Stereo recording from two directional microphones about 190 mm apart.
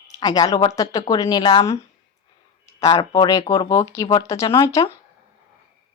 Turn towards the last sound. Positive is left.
turn(degrees=20)  # may be behind; listen again after turning